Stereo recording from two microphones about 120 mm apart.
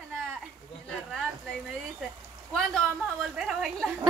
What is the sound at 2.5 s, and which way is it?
A woman's voice, 5° left (ahead or behind).